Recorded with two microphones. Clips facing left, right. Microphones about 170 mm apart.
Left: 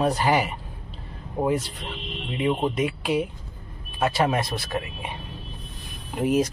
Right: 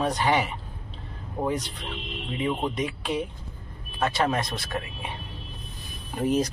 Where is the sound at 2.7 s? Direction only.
5° left (ahead or behind).